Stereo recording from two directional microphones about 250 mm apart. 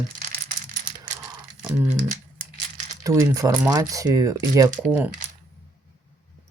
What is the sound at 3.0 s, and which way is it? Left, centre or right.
Speech, centre.